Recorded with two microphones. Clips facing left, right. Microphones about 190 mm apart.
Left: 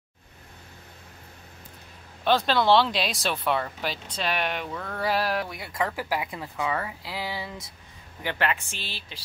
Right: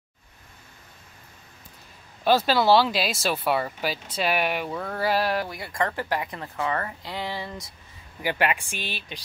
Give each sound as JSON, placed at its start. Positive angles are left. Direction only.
{"t": 2.2, "sound": "speech", "side_deg": -5}
{"t": 8.2, "sound": "a woman's voice", "side_deg": -10}